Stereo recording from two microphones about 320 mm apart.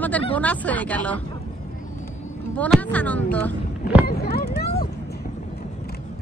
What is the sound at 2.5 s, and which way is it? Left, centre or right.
Speech, centre.